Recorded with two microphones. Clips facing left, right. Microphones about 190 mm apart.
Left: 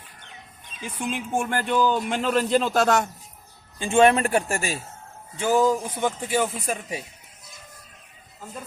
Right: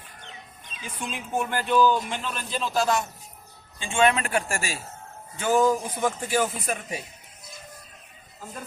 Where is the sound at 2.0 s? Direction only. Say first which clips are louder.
Left 10 dB; 65° left (ahead or behind).